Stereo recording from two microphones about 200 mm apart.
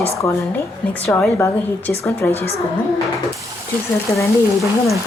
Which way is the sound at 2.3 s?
30° left (ahead or behind).